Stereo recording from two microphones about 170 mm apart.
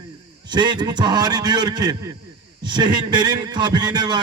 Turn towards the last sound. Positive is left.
turn(degrees=-25)  # may be behind; listen again after turning